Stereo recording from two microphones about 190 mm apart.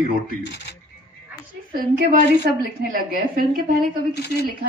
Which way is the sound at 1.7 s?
50° right (ahead or behind).